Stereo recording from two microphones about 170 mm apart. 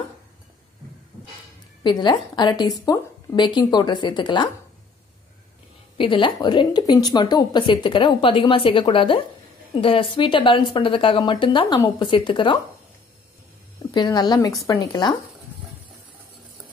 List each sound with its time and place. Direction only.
1.8 s speech: 25° left (ahead or behind)
5.9 s speech: 30° left (ahead or behind)
13.9 s speech: 25° left (ahead or behind)